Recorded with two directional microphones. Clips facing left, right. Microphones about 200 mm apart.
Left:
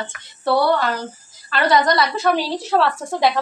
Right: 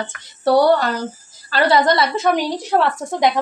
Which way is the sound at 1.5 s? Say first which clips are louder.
Right 2 dB; 30° right (ahead or behind).